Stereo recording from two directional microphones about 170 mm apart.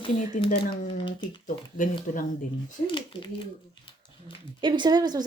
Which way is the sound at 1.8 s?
50° left (ahead or behind).